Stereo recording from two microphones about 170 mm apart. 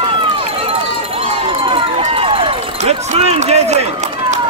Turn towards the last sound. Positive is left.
turn(degrees=-40)  # may be behind; listen again after turning